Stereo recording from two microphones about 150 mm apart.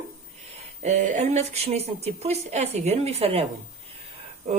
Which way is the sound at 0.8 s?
55° right (ahead or behind).